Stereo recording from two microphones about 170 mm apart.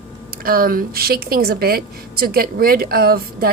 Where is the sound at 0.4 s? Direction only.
60° right (ahead or behind).